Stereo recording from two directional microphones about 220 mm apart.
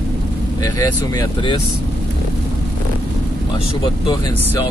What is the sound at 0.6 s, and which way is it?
Speech, 15° left (ahead or behind).